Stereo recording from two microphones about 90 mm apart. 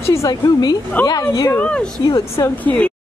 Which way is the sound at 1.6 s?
10° left (ahead or behind).